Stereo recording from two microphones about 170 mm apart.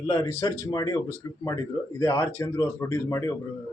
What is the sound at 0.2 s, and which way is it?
Speech, 15° left (ahead or behind).